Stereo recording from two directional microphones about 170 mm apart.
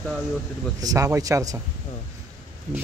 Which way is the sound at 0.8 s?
20° right (ahead or behind).